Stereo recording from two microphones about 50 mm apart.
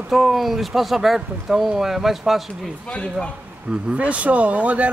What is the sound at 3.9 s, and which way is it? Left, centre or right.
Speech, right.